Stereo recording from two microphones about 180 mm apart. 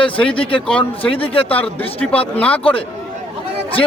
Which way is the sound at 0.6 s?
5° left (ahead or behind).